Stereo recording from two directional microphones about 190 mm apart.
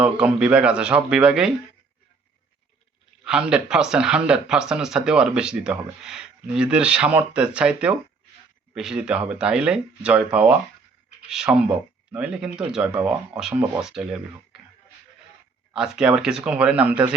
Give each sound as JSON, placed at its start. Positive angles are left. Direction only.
{"t": 0.0, "sound": "speech", "side_deg": -5}
{"t": 3.2, "sound": "speech", "side_deg": -5}
{"t": 15.7, "sound": "speech", "side_deg": -5}